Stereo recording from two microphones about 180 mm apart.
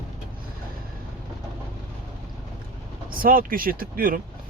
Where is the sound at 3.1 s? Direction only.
50° right (ahead or behind).